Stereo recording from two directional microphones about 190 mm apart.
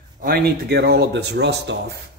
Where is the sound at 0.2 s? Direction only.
55° right (ahead or behind).